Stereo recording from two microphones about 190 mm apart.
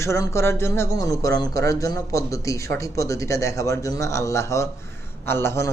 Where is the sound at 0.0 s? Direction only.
15° left (ahead or behind).